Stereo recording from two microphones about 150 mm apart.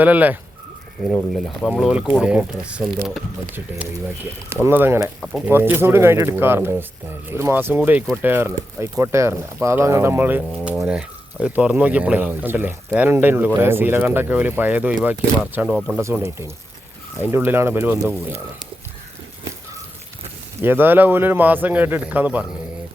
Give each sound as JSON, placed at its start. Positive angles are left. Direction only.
{"t": 0.0, "sound": "speech", "side_deg": -10}
{"t": 1.1, "sound": "speech", "side_deg": 0}
{"t": 4.6, "sound": "speech", "side_deg": -15}
{"t": 16.0, "sound": "speech", "side_deg": -20}
{"t": 20.6, "sound": "speech", "side_deg": -15}